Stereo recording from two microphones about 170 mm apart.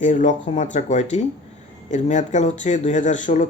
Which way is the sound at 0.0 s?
45° left (ahead or behind).